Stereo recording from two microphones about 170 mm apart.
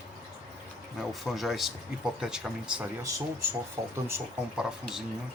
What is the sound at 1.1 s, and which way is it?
Speech, centre (ahead or behind).